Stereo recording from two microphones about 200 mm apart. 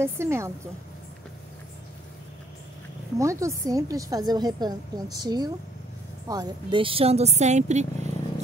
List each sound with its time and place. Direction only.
0.0 s speech: 10° right (ahead or behind)
3.2 s a woman's voice: 15° right (ahead or behind); by 8.1 s 35° right (ahead or behind)